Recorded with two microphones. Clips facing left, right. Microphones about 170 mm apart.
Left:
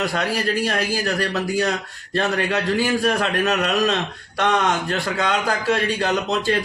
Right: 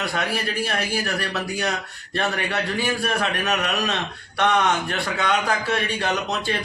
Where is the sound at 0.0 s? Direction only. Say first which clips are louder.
Left 3 dB; 40° left (ahead or behind).